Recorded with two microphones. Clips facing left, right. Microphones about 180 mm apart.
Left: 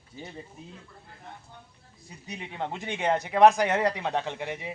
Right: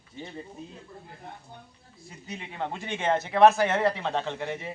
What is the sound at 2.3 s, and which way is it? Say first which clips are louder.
Speech: even; 15° left (ahead or behind).